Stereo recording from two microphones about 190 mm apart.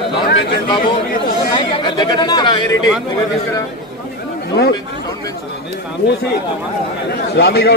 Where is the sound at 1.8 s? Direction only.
20° left (ahead or behind).